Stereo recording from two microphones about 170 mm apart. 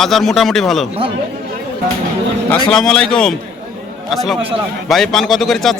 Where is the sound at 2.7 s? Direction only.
5° left (ahead or behind).